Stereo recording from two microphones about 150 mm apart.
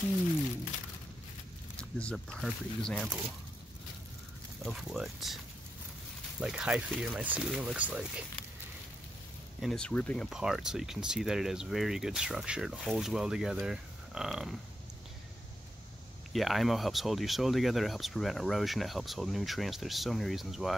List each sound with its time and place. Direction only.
1.8 s speech: 5° left (ahead or behind)
4.6 s speech: centre (ahead or behind)
6.4 s speech: 5° right (ahead or behind)
9.6 s speech: 5° left (ahead or behind)
10.3 s speech: 5° right (ahead or behind)
16.3 s speech: centre (ahead or behind)